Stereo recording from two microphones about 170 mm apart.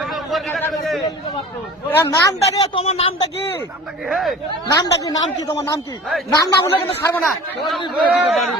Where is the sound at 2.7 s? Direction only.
35° left (ahead or behind).